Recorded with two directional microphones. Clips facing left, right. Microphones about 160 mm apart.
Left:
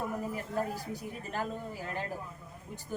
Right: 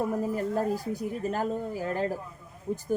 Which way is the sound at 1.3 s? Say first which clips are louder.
Right 4 dB; 40° right (ahead or behind).